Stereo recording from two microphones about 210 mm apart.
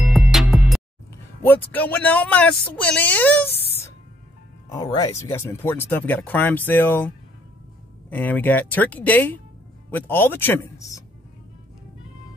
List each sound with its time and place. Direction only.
0.0 s music: centre (ahead or behind)
1.4 s speech: 10° left (ahead or behind)
4.6 s speech: 20° left (ahead or behind)
8.1 s speech: 10° left (ahead or behind)